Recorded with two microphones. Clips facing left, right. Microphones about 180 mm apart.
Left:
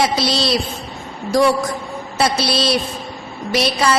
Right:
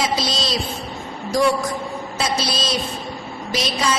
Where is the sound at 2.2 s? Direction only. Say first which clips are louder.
Left 6 dB; 65° left (ahead or behind).